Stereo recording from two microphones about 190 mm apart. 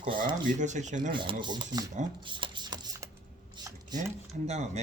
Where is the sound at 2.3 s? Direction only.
25° right (ahead or behind).